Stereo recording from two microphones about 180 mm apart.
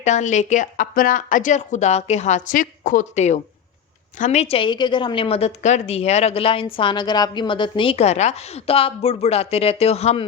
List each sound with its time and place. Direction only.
0.0 s a woman's voice: 40° left (ahead or behind)